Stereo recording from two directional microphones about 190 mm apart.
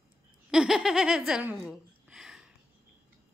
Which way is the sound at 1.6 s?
Centre (ahead or behind).